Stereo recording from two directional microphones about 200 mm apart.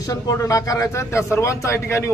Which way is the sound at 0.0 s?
15° left (ahead or behind).